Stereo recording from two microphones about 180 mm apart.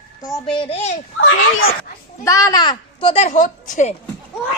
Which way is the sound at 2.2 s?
15° left (ahead or behind).